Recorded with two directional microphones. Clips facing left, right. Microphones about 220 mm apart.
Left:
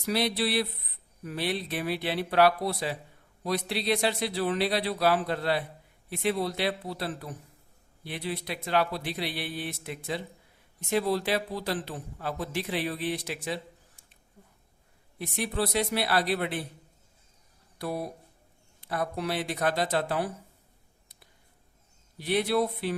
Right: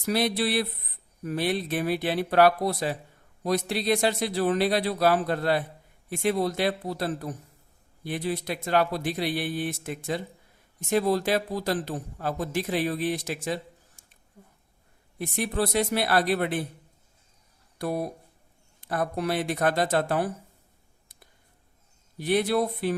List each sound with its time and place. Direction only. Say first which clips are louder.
0.0 s a man's voice: right 2 dB; 50° right (ahead or behind)
15.2 s a man's voice: right 3 dB; 50° right (ahead or behind)
17.7 s a man's voice: right 4 dB; 50° right (ahead or behind)
22.2 s a man's voice: right 2 dB; 45° right (ahead or behind)